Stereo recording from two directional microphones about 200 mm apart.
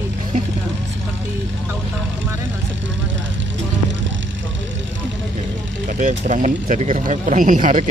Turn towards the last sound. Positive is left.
turn(degrees=-40)  # may be behind; listen again after turning